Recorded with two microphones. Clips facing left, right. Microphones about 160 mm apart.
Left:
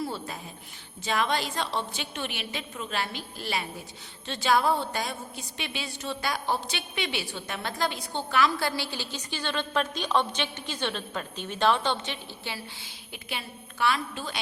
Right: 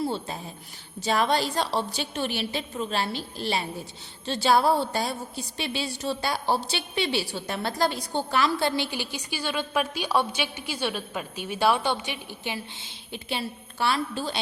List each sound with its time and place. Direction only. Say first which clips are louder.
0.0 s a sound: right 4 dB; 25° right (ahead or behind)
1.0 s a woman's voice: right 4 dB; 35° right (ahead or behind); by 12.9 s 20° right (ahead or behind)
13.3 s a woman's voice: right 5 dB; 30° right (ahead or behind)